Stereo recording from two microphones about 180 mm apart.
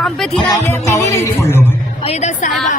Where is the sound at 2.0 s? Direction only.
40° left (ahead or behind).